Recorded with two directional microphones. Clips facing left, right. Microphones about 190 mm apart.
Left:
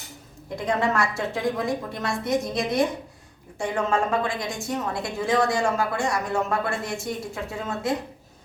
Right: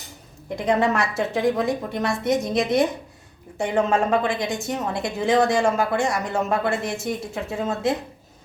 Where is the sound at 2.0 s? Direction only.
20° right (ahead or behind).